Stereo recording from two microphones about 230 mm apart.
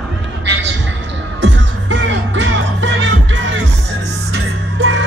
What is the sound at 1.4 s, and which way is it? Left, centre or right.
Music, right.